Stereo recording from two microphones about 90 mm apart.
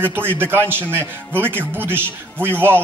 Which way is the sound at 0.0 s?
25° right (ahead or behind).